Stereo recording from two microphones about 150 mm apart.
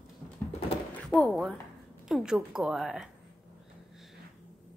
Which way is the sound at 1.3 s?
Centre (ahead or behind).